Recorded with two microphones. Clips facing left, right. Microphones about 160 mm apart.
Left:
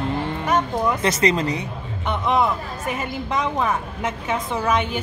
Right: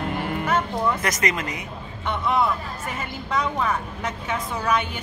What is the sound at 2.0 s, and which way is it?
A woman's voice, 20° left (ahead or behind).